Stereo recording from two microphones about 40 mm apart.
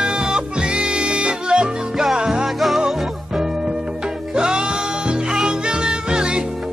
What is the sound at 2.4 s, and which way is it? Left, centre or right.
Music, centre.